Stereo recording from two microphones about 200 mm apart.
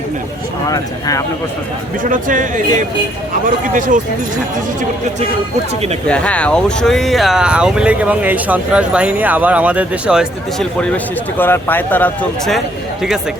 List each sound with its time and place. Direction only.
0.7 s speech: 15° left (ahead or behind)
2.0 s speech: 40° right (ahead or behind)
6.1 s speech: 5° left (ahead or behind)